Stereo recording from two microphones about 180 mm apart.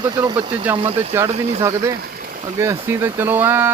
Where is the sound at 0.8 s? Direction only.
35° right (ahead or behind).